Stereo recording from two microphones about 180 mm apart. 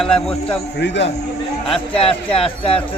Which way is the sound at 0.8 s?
80° left.